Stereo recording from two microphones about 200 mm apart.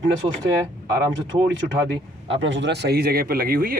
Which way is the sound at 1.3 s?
20° right (ahead or behind).